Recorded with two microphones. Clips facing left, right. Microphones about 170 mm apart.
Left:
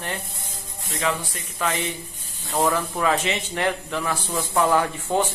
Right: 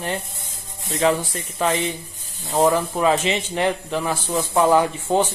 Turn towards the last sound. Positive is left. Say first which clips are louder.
# right 4 dB
turn(degrees=-20)  # may be behind; listen again after turning